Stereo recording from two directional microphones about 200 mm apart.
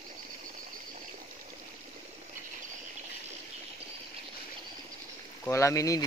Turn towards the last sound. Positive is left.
turn(degrees=15)  # may be behind; listen again after turning